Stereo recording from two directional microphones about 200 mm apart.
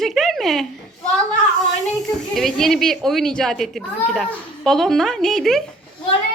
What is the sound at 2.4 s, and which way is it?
Speech, centre (ahead or behind).